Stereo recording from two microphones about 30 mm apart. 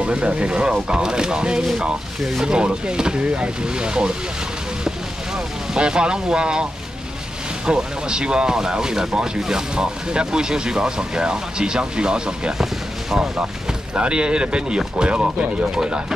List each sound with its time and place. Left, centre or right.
0.0 s speech: right
5.8 s speech: right
7.6 s speech: right
13.9 s speech: right